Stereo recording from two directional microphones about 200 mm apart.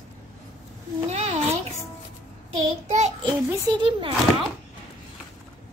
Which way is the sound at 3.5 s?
20° right (ahead or behind).